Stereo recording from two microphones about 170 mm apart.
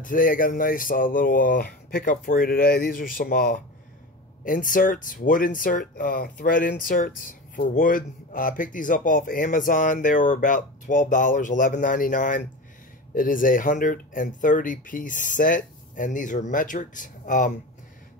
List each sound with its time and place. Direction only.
0.0 s speech: 55° left (ahead or behind)